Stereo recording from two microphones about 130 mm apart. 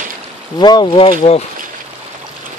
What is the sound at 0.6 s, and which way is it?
Speech, 35° left (ahead or behind).